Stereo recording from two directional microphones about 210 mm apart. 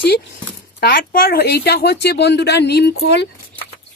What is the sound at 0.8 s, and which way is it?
Speech, 45° left (ahead or behind).